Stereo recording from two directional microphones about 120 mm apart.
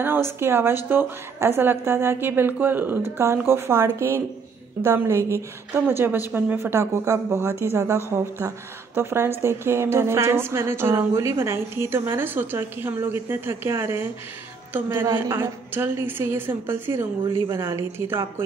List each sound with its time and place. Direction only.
0.0 s a woman's voice: 20° right (ahead or behind)